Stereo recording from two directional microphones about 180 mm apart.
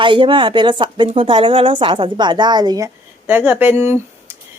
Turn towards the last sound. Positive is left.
turn(degrees=-10)  # may be behind; listen again after turning